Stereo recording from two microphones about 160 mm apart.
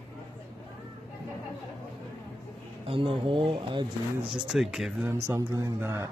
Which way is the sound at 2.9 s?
35° right (ahead or behind).